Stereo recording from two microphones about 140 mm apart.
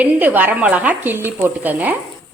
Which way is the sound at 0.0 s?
10° right (ahead or behind).